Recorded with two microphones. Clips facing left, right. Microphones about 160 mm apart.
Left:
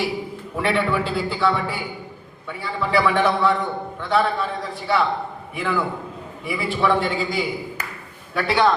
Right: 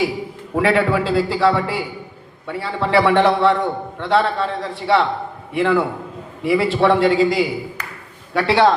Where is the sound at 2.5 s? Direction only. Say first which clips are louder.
Right 4 dB; 70° right (ahead or behind).